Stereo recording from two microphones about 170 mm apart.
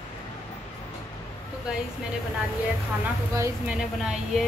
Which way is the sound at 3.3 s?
15° right (ahead or behind).